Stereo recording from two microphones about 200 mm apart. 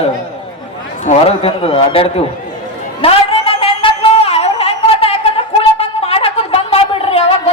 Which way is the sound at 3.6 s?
30° left (ahead or behind).